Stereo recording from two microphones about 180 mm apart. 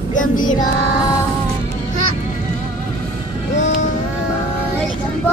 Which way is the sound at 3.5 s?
40° left (ahead or behind).